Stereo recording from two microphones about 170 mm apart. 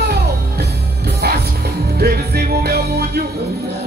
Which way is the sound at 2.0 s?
65° right (ahead or behind).